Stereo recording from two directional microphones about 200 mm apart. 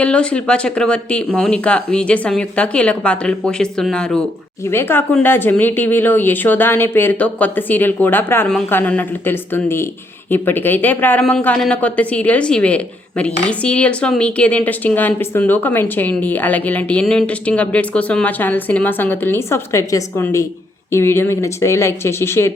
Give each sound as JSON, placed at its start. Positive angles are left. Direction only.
{"t": 0.0, "sound": "speech", "side_deg": 5}